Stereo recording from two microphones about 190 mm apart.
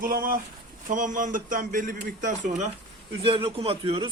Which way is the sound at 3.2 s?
30° right (ahead or behind).